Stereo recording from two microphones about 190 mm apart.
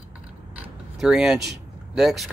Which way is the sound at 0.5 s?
Centre (ahead or behind).